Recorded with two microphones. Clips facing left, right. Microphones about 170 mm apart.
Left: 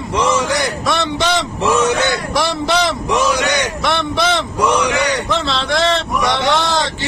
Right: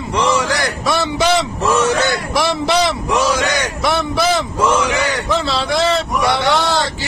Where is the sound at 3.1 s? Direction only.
20° left (ahead or behind).